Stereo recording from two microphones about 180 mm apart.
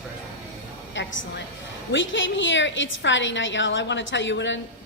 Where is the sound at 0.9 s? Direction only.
90° left.